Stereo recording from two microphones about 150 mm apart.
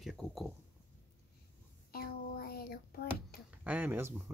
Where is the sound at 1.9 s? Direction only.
90° left.